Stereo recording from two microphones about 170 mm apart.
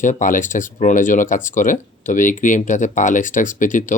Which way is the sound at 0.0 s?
50° left (ahead or behind).